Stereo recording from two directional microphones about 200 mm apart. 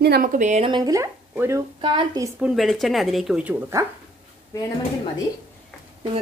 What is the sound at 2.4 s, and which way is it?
A woman's voice, centre (ahead or behind).